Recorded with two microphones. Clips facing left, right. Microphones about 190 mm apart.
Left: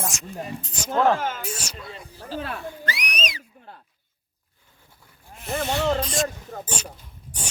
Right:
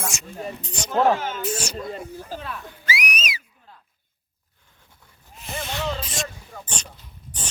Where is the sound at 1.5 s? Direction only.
45° right (ahead or behind).